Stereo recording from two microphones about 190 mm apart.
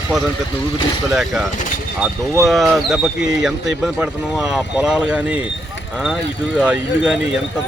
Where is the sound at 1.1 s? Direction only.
5° right (ahead or behind).